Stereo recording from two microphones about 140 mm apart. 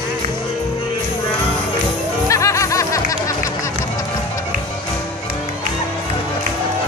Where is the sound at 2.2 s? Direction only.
20° left (ahead or behind).